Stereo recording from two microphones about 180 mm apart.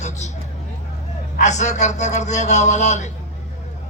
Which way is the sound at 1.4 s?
40° left (ahead or behind).